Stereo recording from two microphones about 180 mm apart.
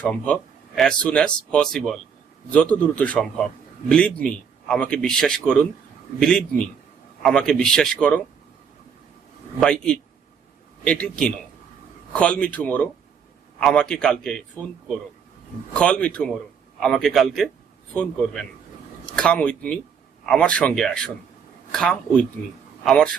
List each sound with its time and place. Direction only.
0.0 s a man's voice: 5° left (ahead or behind)
9.6 s a man's voice: 5° left (ahead or behind)
15.8 s a man's voice: 5° left (ahead or behind)